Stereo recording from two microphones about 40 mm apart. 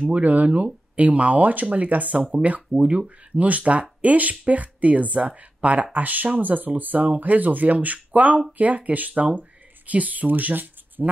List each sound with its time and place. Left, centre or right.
0.0 s speech: right